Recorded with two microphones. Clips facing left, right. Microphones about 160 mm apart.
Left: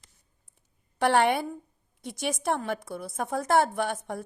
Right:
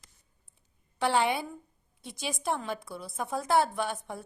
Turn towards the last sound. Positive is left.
turn(degrees=55)  # may be behind; listen again after turning